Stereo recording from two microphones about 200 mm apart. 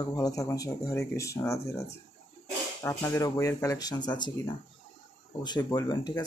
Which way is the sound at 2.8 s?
15° left (ahead or behind).